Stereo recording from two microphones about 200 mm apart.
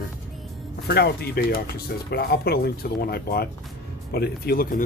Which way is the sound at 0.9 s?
55° left (ahead or behind).